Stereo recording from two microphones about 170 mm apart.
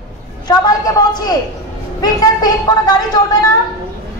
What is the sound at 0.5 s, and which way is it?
Speech, 25° left (ahead or behind).